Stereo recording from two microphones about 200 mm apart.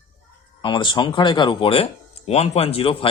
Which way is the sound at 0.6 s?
20° left (ahead or behind).